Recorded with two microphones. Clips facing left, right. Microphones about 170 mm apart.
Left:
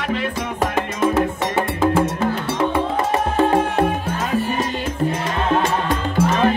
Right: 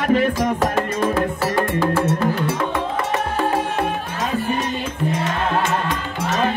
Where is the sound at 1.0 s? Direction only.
20° left (ahead or behind).